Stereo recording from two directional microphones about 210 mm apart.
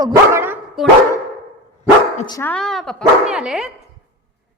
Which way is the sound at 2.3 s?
10° left (ahead or behind).